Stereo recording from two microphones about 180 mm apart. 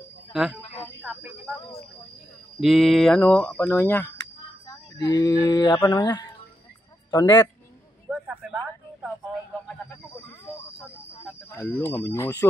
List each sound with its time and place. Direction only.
0.3 s speech: centre (ahead or behind)
2.6 s a man's voice: centre (ahead or behind); by 7.4 s 20° left (ahead or behind)
8.1 s a sound: 5° right (ahead or behind)
11.5 s speech: 15° left (ahead or behind)